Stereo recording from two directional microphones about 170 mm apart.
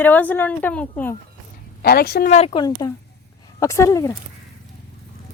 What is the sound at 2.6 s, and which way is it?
A woman's voice, 20° left (ahead or behind).